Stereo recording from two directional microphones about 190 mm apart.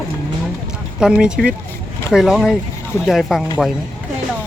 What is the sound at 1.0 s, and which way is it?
Speech, 5° right (ahead or behind).